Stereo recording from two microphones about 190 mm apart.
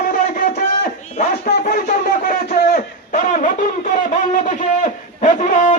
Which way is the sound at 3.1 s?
45° left (ahead or behind).